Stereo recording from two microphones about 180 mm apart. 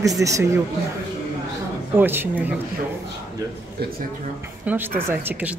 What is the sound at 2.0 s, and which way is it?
Speech, 10° right (ahead or behind).